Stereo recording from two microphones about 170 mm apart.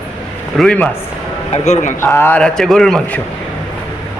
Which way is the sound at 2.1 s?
10° left (ahead or behind).